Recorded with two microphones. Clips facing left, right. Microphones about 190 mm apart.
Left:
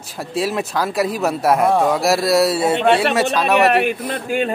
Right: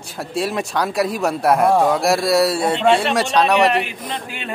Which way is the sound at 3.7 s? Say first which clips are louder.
Left 4 dB; 55° left (ahead or behind).